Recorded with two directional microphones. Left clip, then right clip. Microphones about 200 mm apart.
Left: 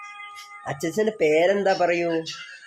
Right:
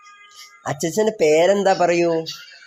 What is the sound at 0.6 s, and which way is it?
Speech, 15° right (ahead or behind).